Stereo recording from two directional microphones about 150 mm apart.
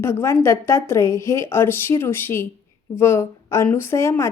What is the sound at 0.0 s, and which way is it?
Speech, 15° left (ahead or behind).